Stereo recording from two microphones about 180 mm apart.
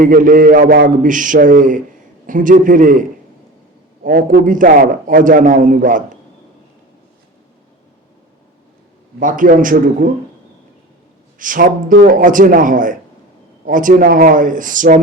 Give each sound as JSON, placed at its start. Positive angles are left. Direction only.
{"t": 0.0, "sound": "a man's voice", "side_deg": -50}
{"t": 4.0, "sound": "a man's voice", "side_deg": -50}
{"t": 9.1, "sound": "a man's voice", "side_deg": -50}
{"t": 11.3, "sound": "a man's voice", "side_deg": -50}